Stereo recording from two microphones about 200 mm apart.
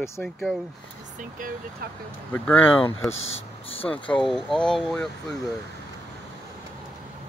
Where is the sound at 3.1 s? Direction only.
75° left (ahead or behind).